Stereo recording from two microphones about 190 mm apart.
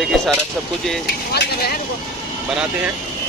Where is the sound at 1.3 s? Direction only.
55° left (ahead or behind).